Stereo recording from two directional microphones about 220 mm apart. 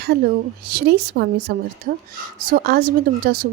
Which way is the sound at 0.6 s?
45° right (ahead or behind).